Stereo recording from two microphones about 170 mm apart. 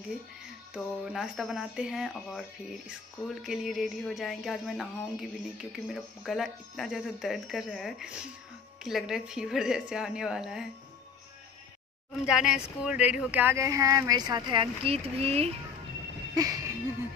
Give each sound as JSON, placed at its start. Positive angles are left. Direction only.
{"t": 0.7, "sound": "music", "side_deg": -5}
{"t": 12.3, "sound": "speech", "side_deg": -5}
{"t": 16.3, "sound": "a sound", "side_deg": -20}